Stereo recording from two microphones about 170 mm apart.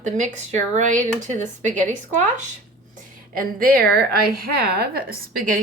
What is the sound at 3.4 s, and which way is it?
A woman's voice, 55° right (ahead or behind).